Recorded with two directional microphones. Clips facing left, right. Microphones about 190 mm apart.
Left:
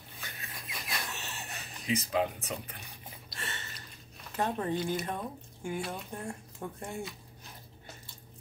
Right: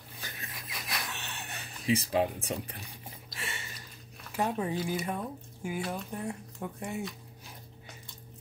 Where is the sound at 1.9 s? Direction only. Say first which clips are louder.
Right 3 dB; 30° right (ahead or behind).